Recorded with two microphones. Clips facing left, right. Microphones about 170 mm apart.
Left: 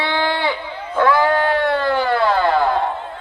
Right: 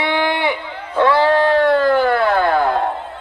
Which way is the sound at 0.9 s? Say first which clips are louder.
Right 2 dB; 30° right (ahead or behind).